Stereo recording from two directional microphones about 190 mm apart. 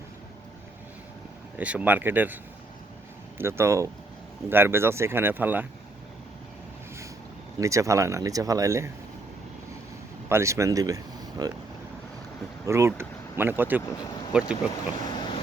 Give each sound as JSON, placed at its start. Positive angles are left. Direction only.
{"t": 1.5, "sound": "speech", "side_deg": -10}
{"t": 7.6, "sound": "speech", "side_deg": -15}
{"t": 10.2, "sound": "speech", "side_deg": -15}
{"t": 12.6, "sound": "speech", "side_deg": -15}